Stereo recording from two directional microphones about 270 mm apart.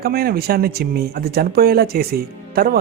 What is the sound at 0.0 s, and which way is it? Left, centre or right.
Speech, right.